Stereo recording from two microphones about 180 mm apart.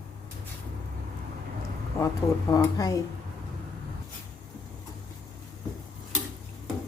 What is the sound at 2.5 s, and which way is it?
Speech, 20° left (ahead or behind).